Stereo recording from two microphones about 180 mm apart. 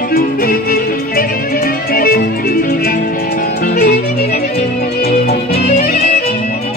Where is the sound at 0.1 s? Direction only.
55° left (ahead or behind).